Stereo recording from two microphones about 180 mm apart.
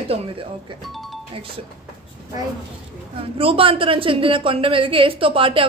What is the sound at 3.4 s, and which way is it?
A woman's voice, 30° right (ahead or behind).